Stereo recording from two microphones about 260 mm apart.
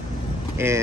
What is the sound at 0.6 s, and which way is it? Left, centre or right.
Speech, centre.